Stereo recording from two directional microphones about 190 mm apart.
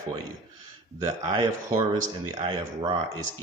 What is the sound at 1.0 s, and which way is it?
Speech, 20° right (ahead or behind).